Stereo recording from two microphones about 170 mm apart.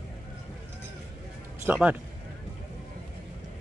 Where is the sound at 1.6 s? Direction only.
10° right (ahead or behind).